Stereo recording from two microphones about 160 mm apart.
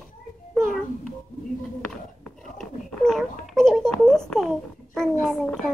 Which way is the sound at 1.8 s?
5° left (ahead or behind).